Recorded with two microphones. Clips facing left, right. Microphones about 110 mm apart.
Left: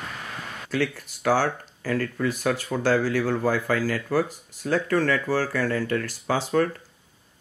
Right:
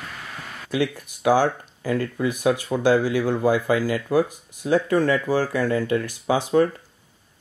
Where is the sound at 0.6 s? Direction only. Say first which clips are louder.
Right 3 dB; 15° right (ahead or behind).